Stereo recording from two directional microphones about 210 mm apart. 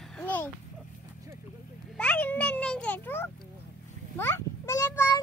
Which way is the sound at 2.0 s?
5° left (ahead or behind).